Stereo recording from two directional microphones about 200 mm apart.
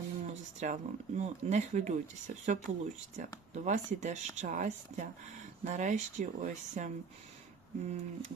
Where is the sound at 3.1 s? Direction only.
35° right (ahead or behind).